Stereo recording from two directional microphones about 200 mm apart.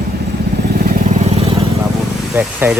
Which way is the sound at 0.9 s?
40° right (ahead or behind).